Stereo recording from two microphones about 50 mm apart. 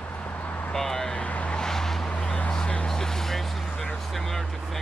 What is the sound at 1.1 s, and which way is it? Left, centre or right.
Vehicle, left.